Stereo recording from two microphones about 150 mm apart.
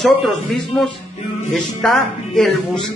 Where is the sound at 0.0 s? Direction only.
Centre (ahead or behind).